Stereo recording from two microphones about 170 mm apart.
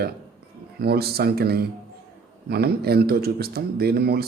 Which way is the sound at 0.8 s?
70° right (ahead or behind).